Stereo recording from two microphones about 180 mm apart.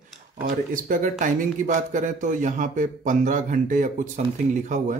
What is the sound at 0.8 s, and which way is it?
A man's voice, 50° right (ahead or behind).